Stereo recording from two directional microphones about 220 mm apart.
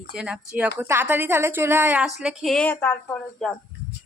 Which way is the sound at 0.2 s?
5° right (ahead or behind).